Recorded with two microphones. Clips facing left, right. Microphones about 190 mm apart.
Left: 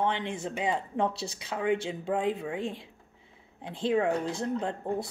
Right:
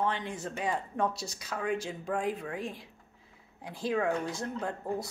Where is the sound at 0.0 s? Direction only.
25° left (ahead or behind).